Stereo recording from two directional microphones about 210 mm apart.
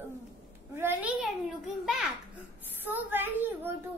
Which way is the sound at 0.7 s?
10° right (ahead or behind).